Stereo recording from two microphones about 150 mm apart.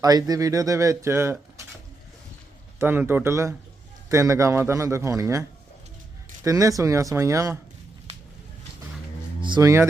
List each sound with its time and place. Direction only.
0.0 s speech: 25° right (ahead or behind)
2.7 s speech: 15° right (ahead or behind)
9.6 s speech: 20° right (ahead or behind)